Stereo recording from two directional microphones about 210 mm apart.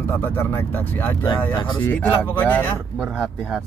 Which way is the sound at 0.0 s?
10° left (ahead or behind).